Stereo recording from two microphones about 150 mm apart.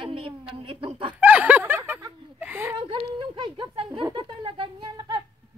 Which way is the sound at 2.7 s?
35° right (ahead or behind).